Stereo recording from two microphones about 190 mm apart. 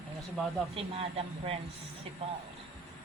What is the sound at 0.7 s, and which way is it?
Speech, 30° right (ahead or behind).